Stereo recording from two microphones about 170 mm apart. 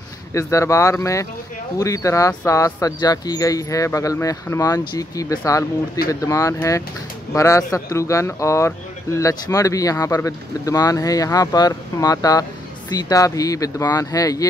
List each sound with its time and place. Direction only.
0.3 s speech: 15° left (ahead or behind)